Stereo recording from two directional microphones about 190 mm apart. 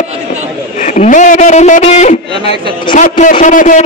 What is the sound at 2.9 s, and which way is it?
Speech, 40° left (ahead or behind).